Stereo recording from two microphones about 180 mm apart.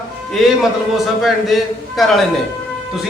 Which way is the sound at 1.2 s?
Centre (ahead or behind).